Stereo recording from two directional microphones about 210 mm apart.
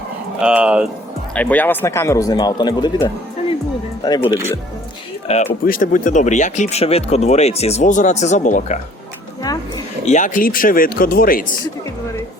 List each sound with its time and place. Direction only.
0.4 s speech: 5° right (ahead or behind)
1.4 s speech: 5° left (ahead or behind)
5.3 s speech: 30° left (ahead or behind)
5.6 s speech: 40° left (ahead or behind)
9.4 s a sound: 20° left (ahead or behind)
10.1 s speech: 35° left (ahead or behind)